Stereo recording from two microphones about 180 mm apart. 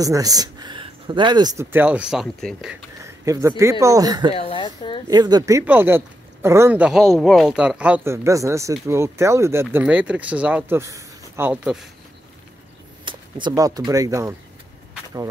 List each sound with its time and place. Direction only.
0.0 s speech: 20° right (ahead or behind)
1.7 s speech: 10° right (ahead or behind)
3.0 s a sound: 15° right (ahead or behind)
3.8 s speech: 20° right (ahead or behind)
4.4 s a sound: 30° left (ahead or behind)
5.0 s speech: 20° right (ahead or behind); by 11.9 s 5° right (ahead or behind)
13.0 s speech: 25° right (ahead or behind)